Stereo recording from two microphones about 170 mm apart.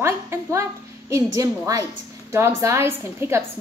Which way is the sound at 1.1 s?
20° right (ahead or behind).